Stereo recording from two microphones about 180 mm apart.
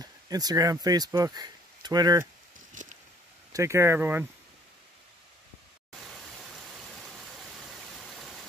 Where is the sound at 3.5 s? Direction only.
15° right (ahead or behind).